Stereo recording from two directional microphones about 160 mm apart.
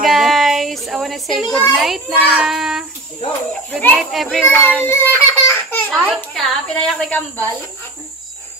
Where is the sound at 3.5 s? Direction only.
10° left (ahead or behind).